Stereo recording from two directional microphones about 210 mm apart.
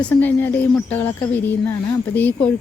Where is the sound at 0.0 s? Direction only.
10° left (ahead or behind).